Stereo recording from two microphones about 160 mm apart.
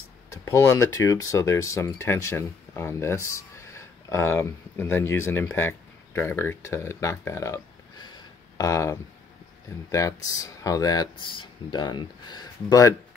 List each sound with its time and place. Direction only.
0.3 s speech: 15° left (ahead or behind)